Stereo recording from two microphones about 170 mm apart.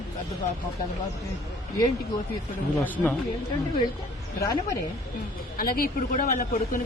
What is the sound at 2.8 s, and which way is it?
Speech, 10° left (ahead or behind).